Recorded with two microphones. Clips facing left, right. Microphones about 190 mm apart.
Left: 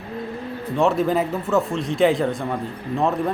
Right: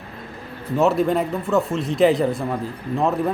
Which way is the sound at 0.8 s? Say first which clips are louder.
Right 1 dB; centre (ahead or behind).